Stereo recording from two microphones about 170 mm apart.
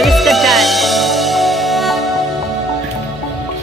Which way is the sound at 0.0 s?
Centre (ahead or behind).